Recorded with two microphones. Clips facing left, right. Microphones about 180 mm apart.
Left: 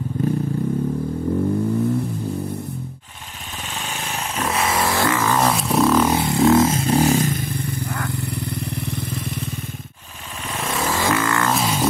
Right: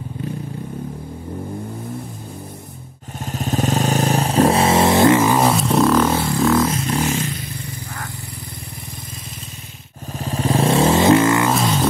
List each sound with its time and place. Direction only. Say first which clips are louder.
3.4 s vehicle: right 13 dB; 40° right (ahead or behind); by 5.4 s 15° right (ahead or behind)
5.4 s a sound: right 2 dB; centre (ahead or behind)
6.0 s vehicle: left 1 dB; 20° left (ahead or behind); by 8.1 s 55° left (ahead or behind)
10.3 s vehicle: right 10 dB; 35° right (ahead or behind); by 11.5 s 20° right (ahead or behind)
11.5 s music: right 3 dB; 5° left (ahead or behind)